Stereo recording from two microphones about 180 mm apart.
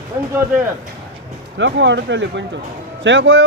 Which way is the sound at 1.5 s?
80° right.